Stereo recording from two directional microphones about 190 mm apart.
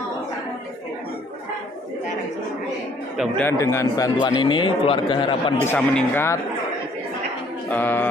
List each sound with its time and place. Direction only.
3.2 s a man's voice: 10° left (ahead or behind); by 5.4 s 25° left (ahead or behind)
5.7 s speech: 10° left (ahead or behind)
7.7 s speech: 10° left (ahead or behind)